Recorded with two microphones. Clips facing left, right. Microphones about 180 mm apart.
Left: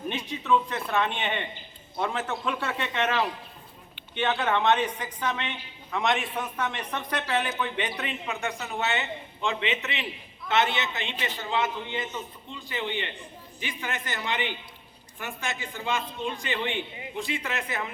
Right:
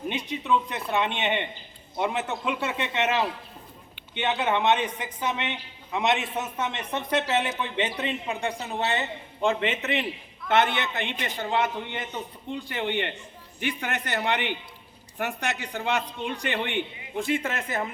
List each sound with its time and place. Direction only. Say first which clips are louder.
0.1 s a man's voice: left 1 dB; 20° right (ahead or behind); by 17.9 s 45° right (ahead or behind)